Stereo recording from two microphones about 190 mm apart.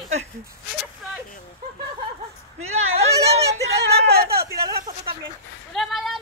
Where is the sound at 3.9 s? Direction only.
55° right (ahead or behind).